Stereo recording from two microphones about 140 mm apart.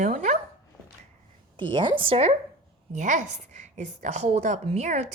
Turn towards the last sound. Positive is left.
turn(degrees=-55)  # may be behind; listen again after turning